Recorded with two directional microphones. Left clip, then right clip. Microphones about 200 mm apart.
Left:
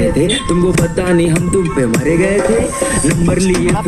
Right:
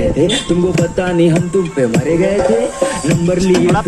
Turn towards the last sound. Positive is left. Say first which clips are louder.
# right 2 dB
turn(degrees=55)  # may be behind; listen again after turning